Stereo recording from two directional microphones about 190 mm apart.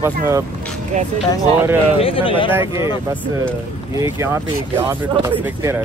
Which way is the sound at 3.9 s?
15° right (ahead or behind).